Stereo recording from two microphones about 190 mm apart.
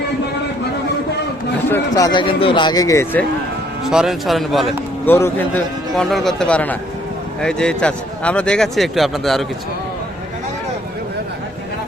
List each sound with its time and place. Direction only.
1.7 s a man's voice: 20° left (ahead or behind)
3.8 s speech: centre (ahead or behind)
5.0 s a man's voice: 10° left (ahead or behind)